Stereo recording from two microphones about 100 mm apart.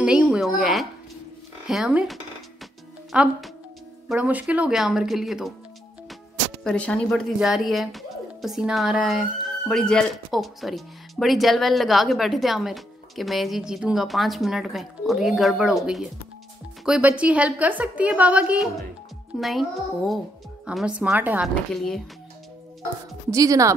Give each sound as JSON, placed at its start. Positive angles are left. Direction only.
{"t": 0.0, "sound": "a woman's voice", "side_deg": -10}
{"t": 4.2, "sound": "a woman's voice", "side_deg": -15}
{"t": 6.6, "sound": "a woman's voice", "side_deg": 10}
{"t": 19.3, "sound": "speech", "side_deg": 0}
{"t": 20.7, "sound": "a woman's voice", "side_deg": -10}
{"t": 21.7, "sound": "speech", "side_deg": 0}
{"t": 23.3, "sound": "speech", "side_deg": -35}